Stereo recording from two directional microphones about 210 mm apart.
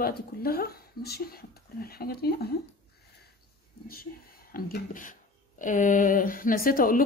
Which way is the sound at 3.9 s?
45° left (ahead or behind).